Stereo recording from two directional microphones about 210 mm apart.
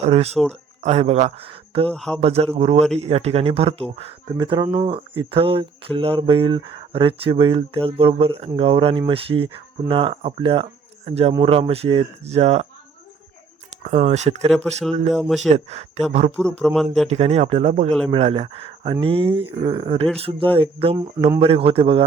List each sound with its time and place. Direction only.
0.0 s speech: 30° right (ahead or behind)
1.9 s speech: 5° left (ahead or behind)
2.2 s speech: 30° right (ahead or behind)
13.8 s speech: 35° right (ahead or behind)
15.1 s speech: centre (ahead or behind)
15.4 s speech: 30° right (ahead or behind)
16.4 s speech: 5° left (ahead or behind)
17.1 s speech: 30° right (ahead or behind)